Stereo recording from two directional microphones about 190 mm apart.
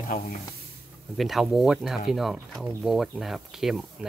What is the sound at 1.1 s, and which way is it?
Speech, centre (ahead or behind).